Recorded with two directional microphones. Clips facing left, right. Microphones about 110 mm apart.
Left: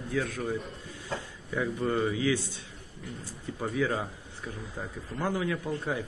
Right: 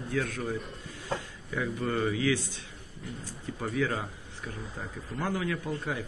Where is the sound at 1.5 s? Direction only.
15° left (ahead or behind).